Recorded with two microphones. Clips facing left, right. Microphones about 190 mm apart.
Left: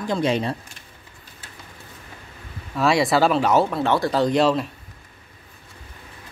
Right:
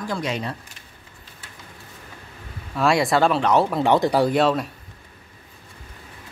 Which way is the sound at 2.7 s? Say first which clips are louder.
Even; centre (ahead or behind).